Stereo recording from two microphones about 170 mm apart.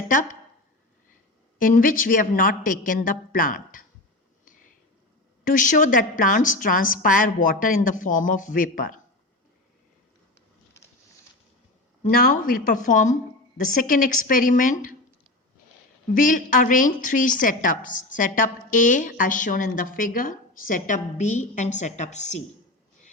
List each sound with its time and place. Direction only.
1.5 s a woman's voice: 55° left (ahead or behind)
5.5 s a woman's voice: 50° left (ahead or behind)
12.0 s a woman's voice: 55° left (ahead or behind)
16.1 s a woman's voice: 50° left (ahead or behind)